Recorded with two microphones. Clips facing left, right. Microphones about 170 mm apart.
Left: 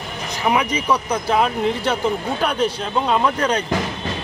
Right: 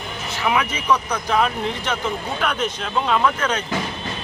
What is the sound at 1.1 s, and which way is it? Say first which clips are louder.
Speech: left 2 dB; 30° left (ahead or behind).